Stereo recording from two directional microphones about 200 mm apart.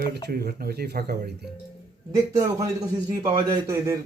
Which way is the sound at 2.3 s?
20° right (ahead or behind).